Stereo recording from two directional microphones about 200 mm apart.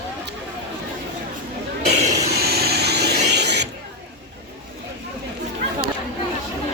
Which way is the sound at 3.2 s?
55° right (ahead or behind).